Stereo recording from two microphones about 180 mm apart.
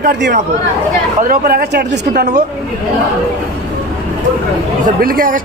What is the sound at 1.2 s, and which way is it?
Speech, 55° right (ahead or behind).